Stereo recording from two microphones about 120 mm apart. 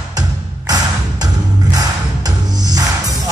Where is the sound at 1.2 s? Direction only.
35° right (ahead or behind).